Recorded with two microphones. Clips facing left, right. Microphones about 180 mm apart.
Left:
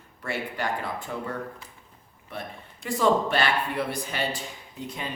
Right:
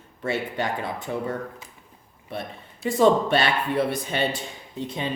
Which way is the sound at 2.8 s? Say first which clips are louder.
Right 4 dB; 25° right (ahead or behind).